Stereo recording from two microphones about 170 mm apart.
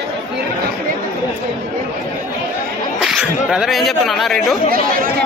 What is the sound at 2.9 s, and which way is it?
Speech, centre (ahead or behind).